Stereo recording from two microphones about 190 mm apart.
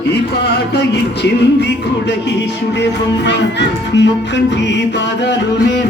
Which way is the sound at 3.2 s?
65° left (ahead or behind).